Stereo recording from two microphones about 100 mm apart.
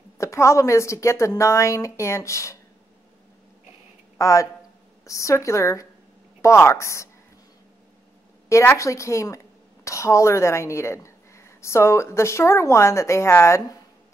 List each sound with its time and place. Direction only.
0.2 s a woman's voice: 30° left (ahead or behind)
4.2 s a man's voice: 35° left (ahead or behind)
8.5 s a woman's voice: 30° left (ahead or behind)